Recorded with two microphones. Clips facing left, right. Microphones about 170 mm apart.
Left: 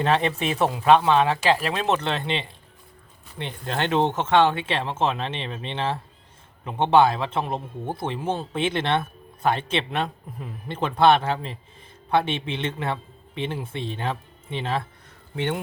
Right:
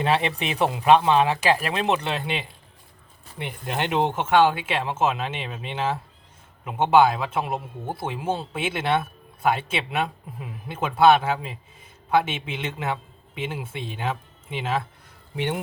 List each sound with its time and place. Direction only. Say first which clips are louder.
0.0 s speech: left 1 dB; 15° right (ahead or behind)